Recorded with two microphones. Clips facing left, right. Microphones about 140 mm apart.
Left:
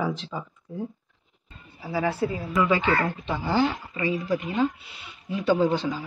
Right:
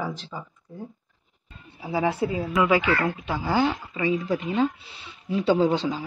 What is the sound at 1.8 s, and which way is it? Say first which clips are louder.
Speech: right 1 dB; 20° right (ahead or behind).